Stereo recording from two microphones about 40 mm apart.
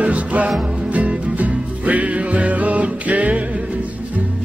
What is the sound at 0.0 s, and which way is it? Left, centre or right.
Music, right.